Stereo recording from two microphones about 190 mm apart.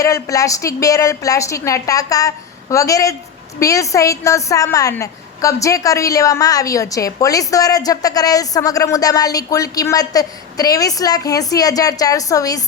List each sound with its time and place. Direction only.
0.0 s a woman's voice: 15° left (ahead or behind)